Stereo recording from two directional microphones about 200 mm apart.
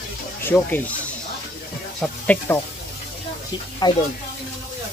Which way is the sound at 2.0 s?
10° left (ahead or behind).